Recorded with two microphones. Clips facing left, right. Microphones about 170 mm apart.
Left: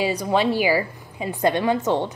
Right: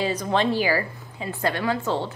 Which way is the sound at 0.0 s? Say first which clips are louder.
Left 2 dB; 10° left (ahead or behind).